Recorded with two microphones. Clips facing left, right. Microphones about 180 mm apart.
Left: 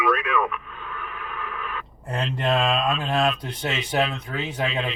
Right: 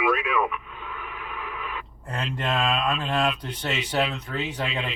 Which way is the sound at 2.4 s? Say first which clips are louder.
Left 3 dB; 30° left (ahead or behind).